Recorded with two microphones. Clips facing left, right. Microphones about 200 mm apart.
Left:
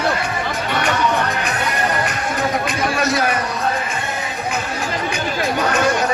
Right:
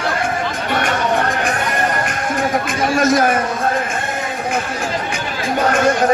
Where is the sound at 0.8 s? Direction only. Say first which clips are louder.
Right 1 dB; 50° right (ahead or behind).